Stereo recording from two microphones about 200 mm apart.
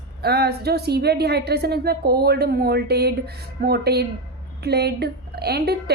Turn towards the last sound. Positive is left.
turn(degrees=-55)  # may be behind; listen again after turning